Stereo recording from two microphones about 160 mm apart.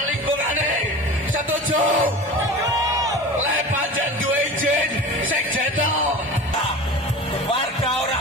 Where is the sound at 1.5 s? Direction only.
55° right (ahead or behind).